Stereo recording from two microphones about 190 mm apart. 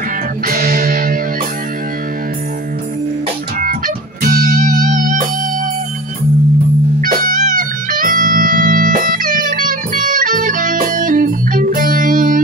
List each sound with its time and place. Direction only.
0.5 s music: 50° right (ahead or behind)
3.6 s music: 50° right (ahead or behind)
7.0 s music: 45° right (ahead or behind)